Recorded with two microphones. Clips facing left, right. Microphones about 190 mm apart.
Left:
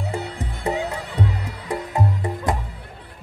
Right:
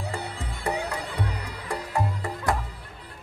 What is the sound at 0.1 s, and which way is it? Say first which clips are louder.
Music: left 5 dB; 20° left (ahead or behind).